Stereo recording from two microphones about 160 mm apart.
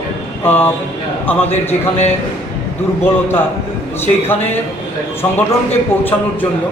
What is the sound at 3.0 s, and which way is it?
Speech, 15° left (ahead or behind).